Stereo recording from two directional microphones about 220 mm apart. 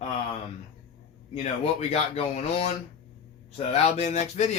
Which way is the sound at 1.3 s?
30° left (ahead or behind).